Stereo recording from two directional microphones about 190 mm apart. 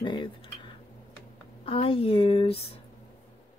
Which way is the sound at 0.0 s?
25° left (ahead or behind).